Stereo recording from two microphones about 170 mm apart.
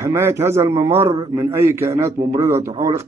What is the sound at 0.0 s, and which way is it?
Speech, 15° right (ahead or behind).